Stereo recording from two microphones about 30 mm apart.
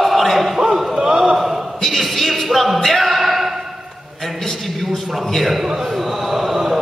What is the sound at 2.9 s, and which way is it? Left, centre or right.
Music, centre.